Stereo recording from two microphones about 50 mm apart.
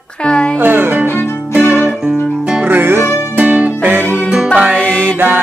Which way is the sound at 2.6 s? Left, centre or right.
Right.